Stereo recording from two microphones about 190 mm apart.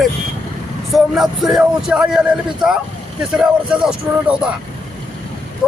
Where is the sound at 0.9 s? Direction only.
Centre (ahead or behind).